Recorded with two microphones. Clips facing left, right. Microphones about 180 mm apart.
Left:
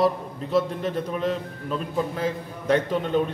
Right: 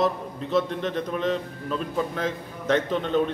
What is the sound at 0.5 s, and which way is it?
A man's voice, 5° left (ahead or behind).